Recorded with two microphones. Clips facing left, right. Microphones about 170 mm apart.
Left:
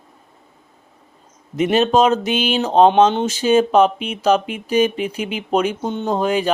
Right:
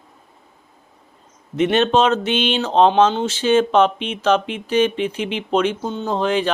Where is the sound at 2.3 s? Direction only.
10° left (ahead or behind).